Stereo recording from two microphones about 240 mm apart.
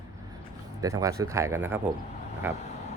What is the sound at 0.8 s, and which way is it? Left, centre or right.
Speech, centre.